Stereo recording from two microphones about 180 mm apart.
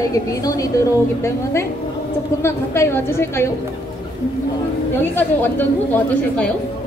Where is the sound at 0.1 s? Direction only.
20° left (ahead or behind).